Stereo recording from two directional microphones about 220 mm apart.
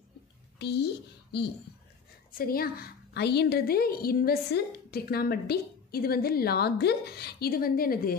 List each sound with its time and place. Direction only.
0.6 s a woman's voice: 50° left (ahead or behind)
2.3 s a woman's voice: 40° left (ahead or behind)